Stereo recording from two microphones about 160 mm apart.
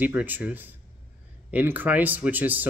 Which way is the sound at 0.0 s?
10° right (ahead or behind).